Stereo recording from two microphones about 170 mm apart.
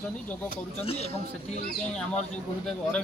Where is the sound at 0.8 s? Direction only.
35° left (ahead or behind).